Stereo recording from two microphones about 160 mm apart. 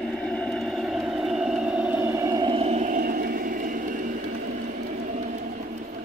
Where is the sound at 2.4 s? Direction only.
35° right (ahead or behind).